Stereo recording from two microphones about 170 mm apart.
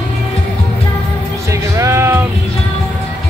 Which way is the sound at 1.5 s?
15° right (ahead or behind).